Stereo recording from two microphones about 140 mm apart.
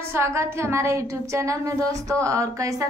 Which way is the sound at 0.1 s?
20° right (ahead or behind).